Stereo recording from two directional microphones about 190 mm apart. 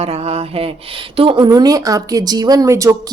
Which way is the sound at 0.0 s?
35° right (ahead or behind).